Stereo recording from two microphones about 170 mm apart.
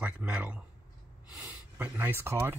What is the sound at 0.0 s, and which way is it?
Speech, 10° right (ahead or behind).